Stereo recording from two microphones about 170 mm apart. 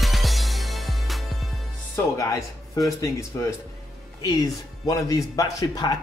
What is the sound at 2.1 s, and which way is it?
Speech, 20° left (ahead or behind).